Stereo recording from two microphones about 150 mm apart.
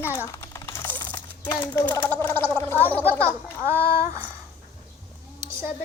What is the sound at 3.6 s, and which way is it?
Speech, 15° right (ahead or behind).